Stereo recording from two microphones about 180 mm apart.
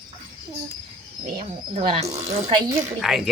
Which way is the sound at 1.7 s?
40° right (ahead or behind).